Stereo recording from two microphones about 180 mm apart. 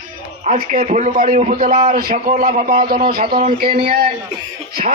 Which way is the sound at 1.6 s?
35° right (ahead or behind).